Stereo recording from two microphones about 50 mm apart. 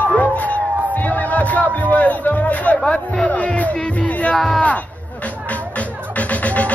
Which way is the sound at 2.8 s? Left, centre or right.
Centre.